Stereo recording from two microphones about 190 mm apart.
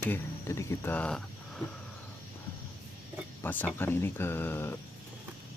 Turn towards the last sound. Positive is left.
turn(degrees=10)  # may be behind; listen again after turning